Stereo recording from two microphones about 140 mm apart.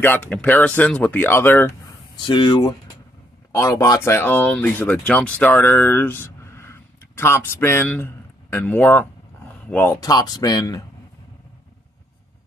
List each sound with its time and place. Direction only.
0.0 s speech: 10° left (ahead or behind)
2.1 s speech: 35° left (ahead or behind)
3.5 s speech: 25° left (ahead or behind)